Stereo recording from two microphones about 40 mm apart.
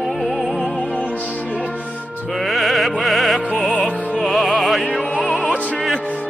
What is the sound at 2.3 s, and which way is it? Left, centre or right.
Music, centre.